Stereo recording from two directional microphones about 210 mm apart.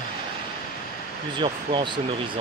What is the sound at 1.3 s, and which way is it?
Speech, 20° right (ahead or behind).